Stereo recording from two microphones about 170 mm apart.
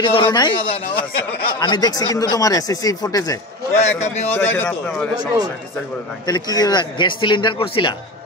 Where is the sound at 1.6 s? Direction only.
25° left (ahead or behind).